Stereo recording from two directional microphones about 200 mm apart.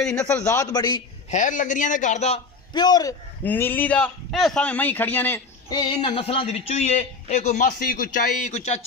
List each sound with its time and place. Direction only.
0.0 s a man's voice: 10° left (ahead or behind)
1.3 s a man's voice: 40° left (ahead or behind)
2.7 s a man's voice: 20° left (ahead or behind)
5.8 s a sound: 25° left (ahead or behind)
6.7 s a man's voice: 35° left (ahead or behind)